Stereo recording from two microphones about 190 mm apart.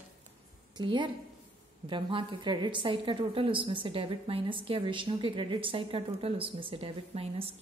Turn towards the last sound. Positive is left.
turn(degrees=-30)  # may be behind; listen again after turning